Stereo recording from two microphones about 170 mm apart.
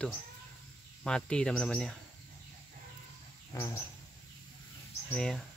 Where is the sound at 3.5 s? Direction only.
15° left (ahead or behind).